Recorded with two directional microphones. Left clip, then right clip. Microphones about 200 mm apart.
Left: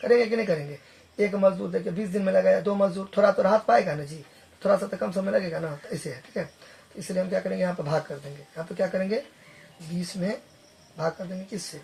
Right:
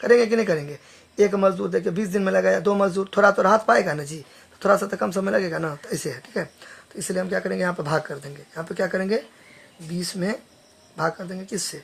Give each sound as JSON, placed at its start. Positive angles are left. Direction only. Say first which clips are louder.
{"t": 0.0, "sound": "a man's voice", "louder": "right 4 dB", "side_deg": -50}